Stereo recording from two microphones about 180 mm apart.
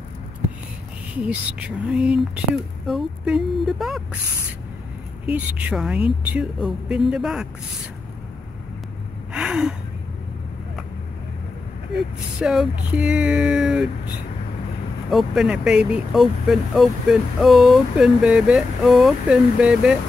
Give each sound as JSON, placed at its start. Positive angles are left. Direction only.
{"t": 1.2, "sound": "speech", "side_deg": -5}
{"t": 5.3, "sound": "speech", "side_deg": -5}
{"t": 9.3, "sound": "gasp", "side_deg": -5}
{"t": 12.4, "sound": "speech", "side_deg": -5}
{"t": 15.0, "sound": "speech", "side_deg": 0}